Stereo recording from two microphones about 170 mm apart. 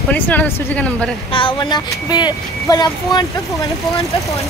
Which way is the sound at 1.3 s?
30° left (ahead or behind).